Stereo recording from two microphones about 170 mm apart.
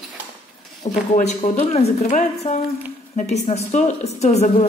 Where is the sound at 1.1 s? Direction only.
40° left (ahead or behind).